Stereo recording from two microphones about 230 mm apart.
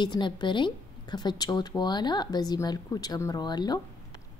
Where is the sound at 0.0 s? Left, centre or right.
Centre.